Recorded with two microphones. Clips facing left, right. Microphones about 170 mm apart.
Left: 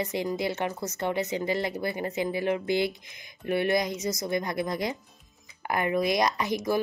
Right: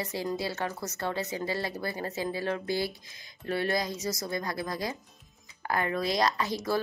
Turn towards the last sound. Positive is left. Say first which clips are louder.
# left 2 dB
turn(degrees=15)  # may be behind; listen again after turning